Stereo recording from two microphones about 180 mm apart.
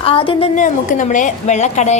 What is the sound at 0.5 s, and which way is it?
A woman's voice, 45° left (ahead or behind).